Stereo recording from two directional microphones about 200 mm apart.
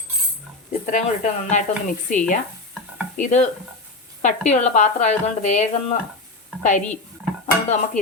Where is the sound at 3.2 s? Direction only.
35° left (ahead or behind).